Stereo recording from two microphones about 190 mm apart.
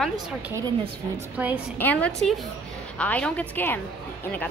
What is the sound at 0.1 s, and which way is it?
A woman's voice, 15° right (ahead or behind).